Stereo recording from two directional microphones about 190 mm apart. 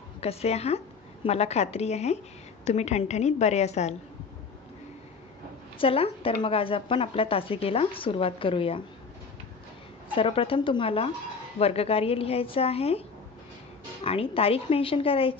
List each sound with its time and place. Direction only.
0.2 s a woman's voice: 30° left (ahead or behind)
5.8 s a woman's voice: 30° left (ahead or behind)
10.1 s a woman's voice: 30° left (ahead or behind)
14.0 s a woman's voice: 30° left (ahead or behind)